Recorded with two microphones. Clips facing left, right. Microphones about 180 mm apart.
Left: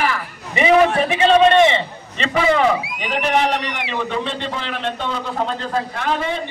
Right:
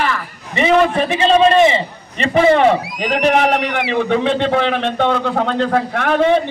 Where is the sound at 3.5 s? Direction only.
55° right (ahead or behind).